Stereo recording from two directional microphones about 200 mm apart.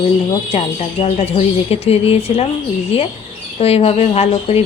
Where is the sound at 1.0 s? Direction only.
30° left (ahead or behind).